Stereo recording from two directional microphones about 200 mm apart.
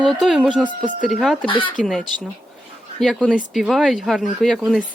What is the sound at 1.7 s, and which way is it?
Speech, centre (ahead or behind).